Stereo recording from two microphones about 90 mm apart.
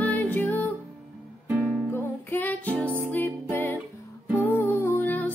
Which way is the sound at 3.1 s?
20° left (ahead or behind).